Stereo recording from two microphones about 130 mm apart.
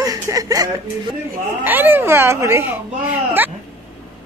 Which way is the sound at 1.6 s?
15° right (ahead or behind).